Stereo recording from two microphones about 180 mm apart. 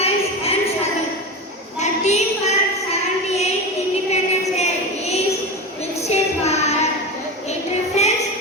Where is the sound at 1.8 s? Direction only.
40° left (ahead or behind).